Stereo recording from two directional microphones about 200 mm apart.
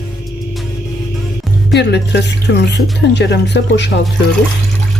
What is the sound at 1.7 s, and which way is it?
Speech, 60° left (ahead or behind).